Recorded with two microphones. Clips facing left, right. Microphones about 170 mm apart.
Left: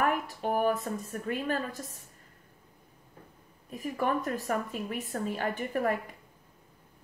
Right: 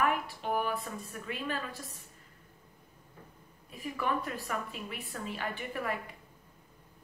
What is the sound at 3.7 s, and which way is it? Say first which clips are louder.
A woman's voice: left 4 dB; 45° left (ahead or behind).